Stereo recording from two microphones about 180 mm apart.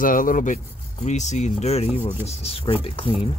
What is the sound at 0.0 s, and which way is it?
Speech, 50° left (ahead or behind).